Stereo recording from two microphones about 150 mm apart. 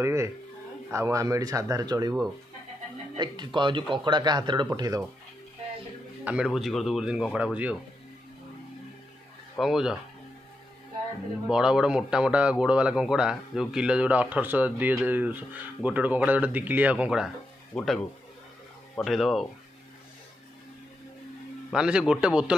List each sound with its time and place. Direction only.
0.0 s a man's voice: 20° right (ahead or behind)
3.2 s a man's voice: 30° right (ahead or behind)
6.2 s speech: 5° right (ahead or behind)
9.6 s speech: 5° right (ahead or behind)
11.4 s speech: 5° right (ahead or behind)
19.0 s speech: centre (ahead or behind)
21.6 s speech: 5° right (ahead or behind)